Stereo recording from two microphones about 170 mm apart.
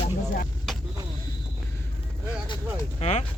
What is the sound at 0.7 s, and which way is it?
Vehicle, centre (ahead or behind).